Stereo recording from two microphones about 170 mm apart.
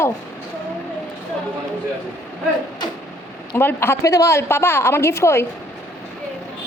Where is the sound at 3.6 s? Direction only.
15° left (ahead or behind).